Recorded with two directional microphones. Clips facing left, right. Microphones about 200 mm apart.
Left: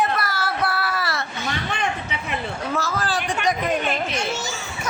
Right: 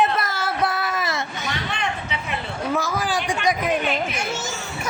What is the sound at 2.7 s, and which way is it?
A child's voice, 15° right (ahead or behind).